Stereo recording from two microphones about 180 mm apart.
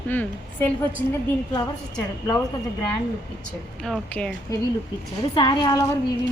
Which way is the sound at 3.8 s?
5° left (ahead or behind).